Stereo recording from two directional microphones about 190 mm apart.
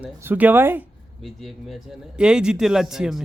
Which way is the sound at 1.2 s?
Centre (ahead or behind).